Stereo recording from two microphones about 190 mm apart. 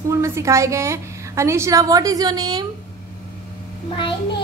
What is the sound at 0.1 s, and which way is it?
A woman's voice, 15° right (ahead or behind).